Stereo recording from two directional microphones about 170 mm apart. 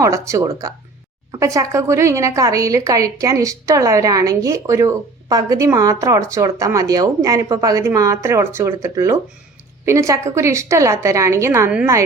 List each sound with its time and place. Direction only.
0.0 s a woman's voice: 15° right (ahead or behind)